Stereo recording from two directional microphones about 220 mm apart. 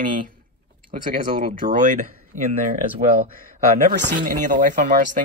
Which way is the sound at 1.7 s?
35° right (ahead or behind).